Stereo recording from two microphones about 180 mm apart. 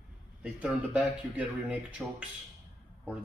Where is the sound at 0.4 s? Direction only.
5° right (ahead or behind).